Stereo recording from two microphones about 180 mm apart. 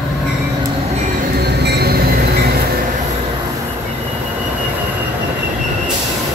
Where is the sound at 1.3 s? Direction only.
65° right (ahead or behind).